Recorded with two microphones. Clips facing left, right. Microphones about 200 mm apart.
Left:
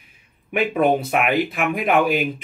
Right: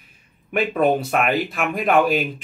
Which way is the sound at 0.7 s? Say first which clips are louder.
Even; 10° left (ahead or behind).